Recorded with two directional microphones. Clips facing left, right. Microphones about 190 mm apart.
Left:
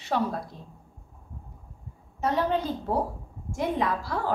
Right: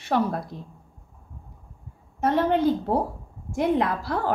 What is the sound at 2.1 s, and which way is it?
A woman's voice, 55° right (ahead or behind).